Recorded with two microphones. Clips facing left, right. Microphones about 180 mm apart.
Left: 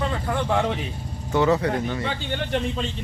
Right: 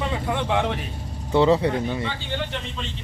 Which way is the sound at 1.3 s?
25° right (ahead or behind).